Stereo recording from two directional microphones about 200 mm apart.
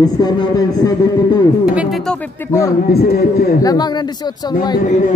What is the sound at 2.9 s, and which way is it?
Speech, 50° left (ahead or behind).